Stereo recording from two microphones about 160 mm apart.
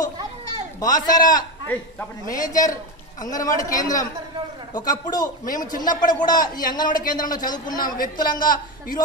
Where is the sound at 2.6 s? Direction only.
20° left (ahead or behind).